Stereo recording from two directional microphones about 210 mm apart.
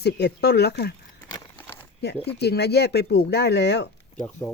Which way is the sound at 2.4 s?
50° left (ahead or behind).